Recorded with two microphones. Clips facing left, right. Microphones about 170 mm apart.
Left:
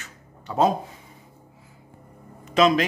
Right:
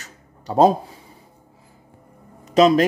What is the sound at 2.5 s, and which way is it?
Speech, 40° right (ahead or behind).